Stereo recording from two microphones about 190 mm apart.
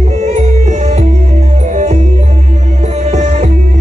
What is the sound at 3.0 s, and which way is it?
Music, 35° right (ahead or behind).